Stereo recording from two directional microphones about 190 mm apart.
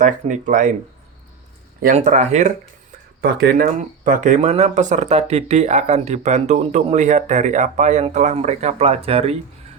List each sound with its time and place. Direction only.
0.0 s speech: 40° right (ahead or behind)
2.0 s speech: 35° right (ahead or behind)
3.2 s speech: 55° right (ahead or behind); by 9.3 s 30° right (ahead or behind)